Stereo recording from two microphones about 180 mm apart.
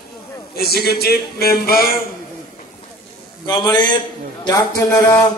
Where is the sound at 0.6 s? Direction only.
60° left (ahead or behind).